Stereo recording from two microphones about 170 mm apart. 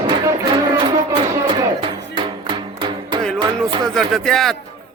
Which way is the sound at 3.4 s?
30° right (ahead or behind).